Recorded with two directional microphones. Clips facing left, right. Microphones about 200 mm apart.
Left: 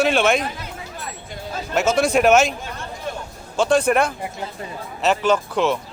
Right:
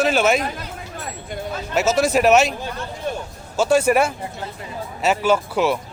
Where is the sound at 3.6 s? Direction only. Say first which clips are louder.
Right 1 dB; 5° right (ahead or behind).